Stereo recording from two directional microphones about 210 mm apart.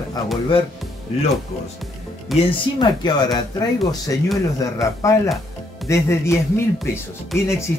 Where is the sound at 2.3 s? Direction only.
20° left (ahead or behind).